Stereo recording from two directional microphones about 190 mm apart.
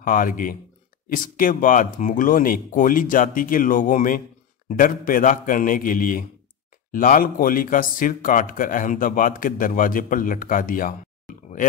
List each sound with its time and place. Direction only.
0.0 s speech: 45° left (ahead or behind)